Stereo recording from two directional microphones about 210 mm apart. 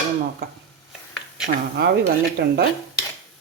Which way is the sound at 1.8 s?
50° right (ahead or behind).